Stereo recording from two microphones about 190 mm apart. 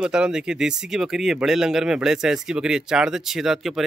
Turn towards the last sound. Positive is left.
turn(degrees=0)  # may be behind; listen again after turning